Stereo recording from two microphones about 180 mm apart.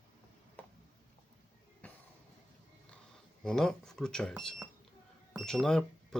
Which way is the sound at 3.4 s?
5° left (ahead or behind).